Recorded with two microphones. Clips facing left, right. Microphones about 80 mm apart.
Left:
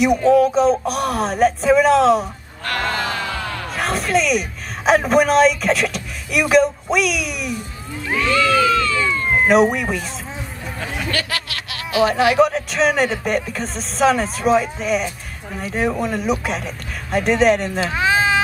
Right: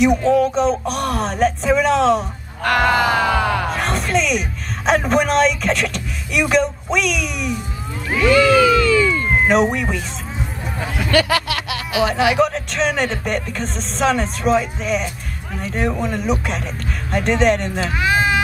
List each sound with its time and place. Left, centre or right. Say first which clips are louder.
0.0 s speech: left 1 dB; centre
2.8 s music: right 7 dB; centre
3.3 s music: right 8 dB; right
3.7 s a man's voice: even; centre
8.2 s cat: right 4 dB; centre
9.3 s speech: left 4 dB; centre
10.8 s music: right 3 dB; centre
11.4 s speech: right 6 dB; centre